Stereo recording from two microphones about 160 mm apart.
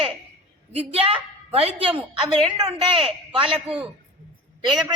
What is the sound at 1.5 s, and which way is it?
A woman's voice, 35° right (ahead or behind).